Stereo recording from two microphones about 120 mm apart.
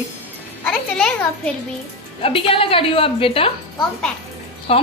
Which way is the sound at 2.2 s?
50° left (ahead or behind).